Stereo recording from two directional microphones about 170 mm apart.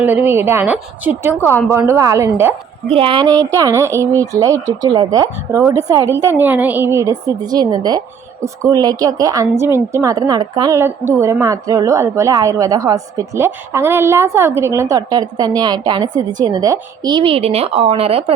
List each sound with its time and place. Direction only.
0.0 s a woman's voice: 10° right (ahead or behind)
1.4 s speech: 10° left (ahead or behind)
1.9 s a woman's voice: 15° right (ahead or behind)
2.9 s a woman's voice: 30° right (ahead or behind)